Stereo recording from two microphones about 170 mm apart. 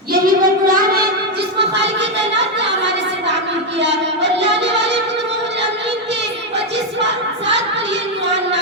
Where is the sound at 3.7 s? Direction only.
90° right.